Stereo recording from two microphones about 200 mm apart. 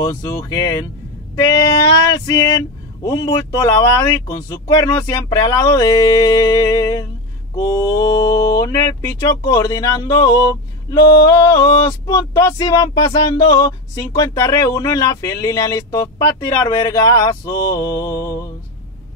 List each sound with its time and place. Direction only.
0.0 s speech: 15° left (ahead or behind)
1.3 s female singing: 15° left (ahead or behind)
2.1 s speech: 20° left (ahead or behind)